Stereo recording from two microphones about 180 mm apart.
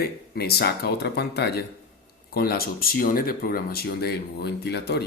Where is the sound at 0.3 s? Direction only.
60° left (ahead or behind).